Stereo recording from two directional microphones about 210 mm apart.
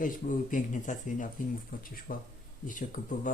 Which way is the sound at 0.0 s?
40° left (ahead or behind).